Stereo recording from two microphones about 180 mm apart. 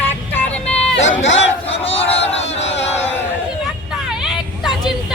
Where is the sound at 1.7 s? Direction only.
35° left (ahead or behind).